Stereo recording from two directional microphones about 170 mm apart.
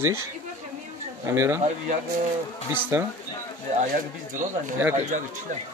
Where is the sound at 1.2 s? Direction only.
15° right (ahead or behind).